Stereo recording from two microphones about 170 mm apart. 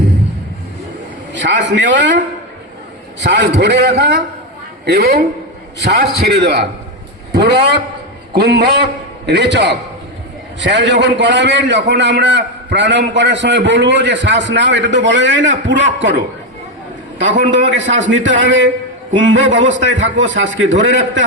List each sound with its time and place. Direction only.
1.3 s a man's voice: 90° right
17.2 s a man's voice: 90° right